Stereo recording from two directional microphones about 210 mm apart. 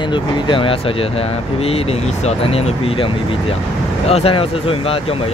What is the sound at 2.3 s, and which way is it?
Speech, 30° left (ahead or behind).